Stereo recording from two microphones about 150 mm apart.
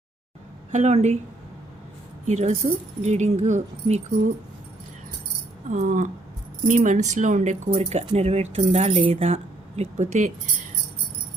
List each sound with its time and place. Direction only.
0.7 s speech: 50° right (ahead or behind)
2.2 s speech: 50° right (ahead or behind)
5.7 s speech: 60° right (ahead or behind)